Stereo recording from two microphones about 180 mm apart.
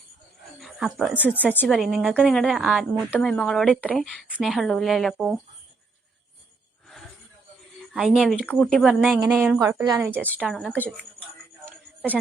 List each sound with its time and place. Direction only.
0.6 s speech: centre (ahead or behind)
1.2 s speech: 10° left (ahead or behind)
1.6 s a woman's voice: centre (ahead or behind)
7.9 s a woman's voice: 5° right (ahead or behind)
8.9 s a woman's voice: 5° right (ahead or behind)
9.6 s a woman's voice: 20° right (ahead or behind)
10.4 s a woman's voice: centre (ahead or behind)